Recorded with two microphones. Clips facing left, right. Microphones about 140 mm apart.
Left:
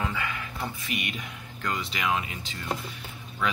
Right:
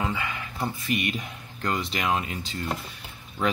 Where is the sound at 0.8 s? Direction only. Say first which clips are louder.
Right 6 dB; 35° right (ahead or behind).